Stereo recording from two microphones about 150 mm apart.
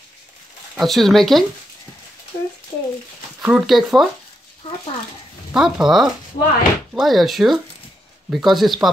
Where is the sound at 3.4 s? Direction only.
5° right (ahead or behind).